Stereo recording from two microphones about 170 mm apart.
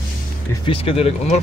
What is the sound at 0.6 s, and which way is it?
Speech, 35° left (ahead or behind).